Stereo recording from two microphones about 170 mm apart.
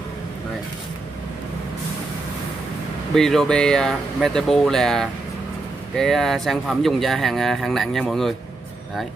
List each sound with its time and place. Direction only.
3.2 s speech: centre (ahead or behind)